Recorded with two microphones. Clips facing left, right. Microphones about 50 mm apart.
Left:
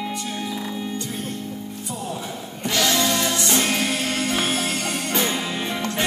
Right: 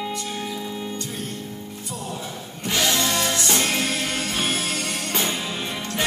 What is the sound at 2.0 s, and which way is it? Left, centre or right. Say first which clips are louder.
Music: left 2 dB; centre.